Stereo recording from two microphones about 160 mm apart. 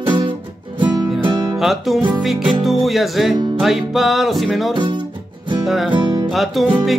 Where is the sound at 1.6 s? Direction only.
Centre (ahead or behind).